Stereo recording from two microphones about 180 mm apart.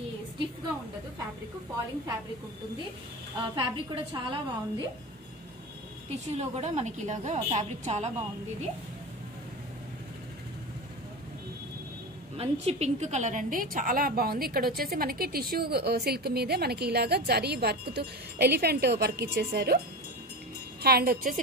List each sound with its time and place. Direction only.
3.5 s a woman's voice: 30° right (ahead or behind)
6.3 s a woman's voice: 35° right (ahead or behind)
12.4 s a woman's voice: 35° right (ahead or behind); by 19.8 s 65° right (ahead or behind)
20.8 s a woman's voice: 60° right (ahead or behind)